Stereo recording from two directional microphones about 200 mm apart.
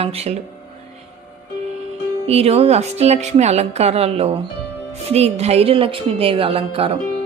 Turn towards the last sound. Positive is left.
turn(degrees=-30)  # may be behind; listen again after turning